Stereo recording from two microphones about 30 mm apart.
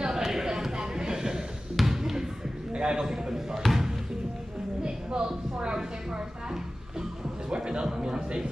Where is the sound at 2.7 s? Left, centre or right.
Right.